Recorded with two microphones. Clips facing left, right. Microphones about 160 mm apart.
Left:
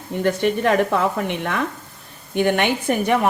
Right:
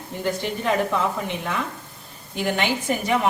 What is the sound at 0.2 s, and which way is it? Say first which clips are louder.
A woman's voice: left 7 dB; 65° left (ahead or behind).